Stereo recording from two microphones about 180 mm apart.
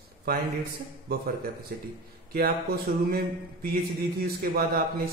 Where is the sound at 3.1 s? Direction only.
60° right (ahead or behind).